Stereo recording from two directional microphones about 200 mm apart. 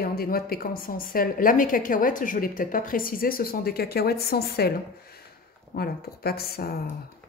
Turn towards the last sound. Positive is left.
turn(degrees=50)  # may be behind; listen again after turning